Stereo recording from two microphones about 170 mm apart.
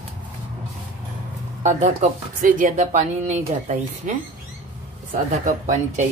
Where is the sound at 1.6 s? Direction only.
45° right (ahead or behind).